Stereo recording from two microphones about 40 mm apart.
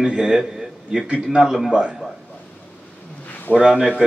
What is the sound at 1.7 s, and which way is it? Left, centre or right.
Speech, right.